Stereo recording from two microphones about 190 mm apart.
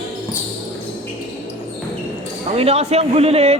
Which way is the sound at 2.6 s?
35° right (ahead or behind).